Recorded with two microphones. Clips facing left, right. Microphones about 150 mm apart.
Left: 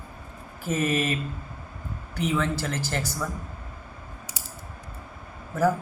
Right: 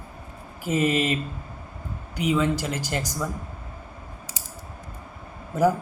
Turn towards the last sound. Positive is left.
turn(degrees=-15)  # may be behind; listen again after turning